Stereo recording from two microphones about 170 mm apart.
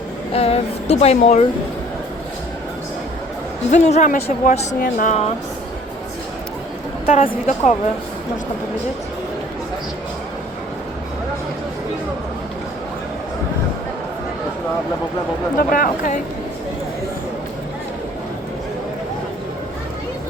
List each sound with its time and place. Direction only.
0.3 s speech: 35° left (ahead or behind)
3.7 s speech: 45° left (ahead or behind)
7.0 s speech: 35° left (ahead or behind)
15.5 s speech: 55° left (ahead or behind)